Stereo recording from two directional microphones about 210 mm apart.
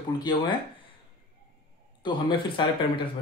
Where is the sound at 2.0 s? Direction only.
20° left (ahead or behind).